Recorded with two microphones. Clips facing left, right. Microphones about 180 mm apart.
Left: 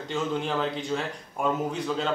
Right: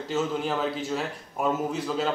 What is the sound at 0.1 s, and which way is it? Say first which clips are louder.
A man's voice: right 1 dB; 5° right (ahead or behind).